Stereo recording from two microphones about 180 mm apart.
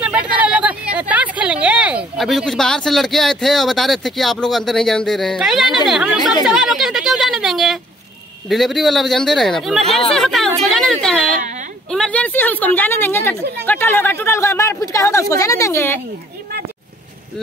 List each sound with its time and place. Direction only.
0.0 s a woman's voice: 5° right (ahead or behind); by 16.0 s 15° left (ahead or behind)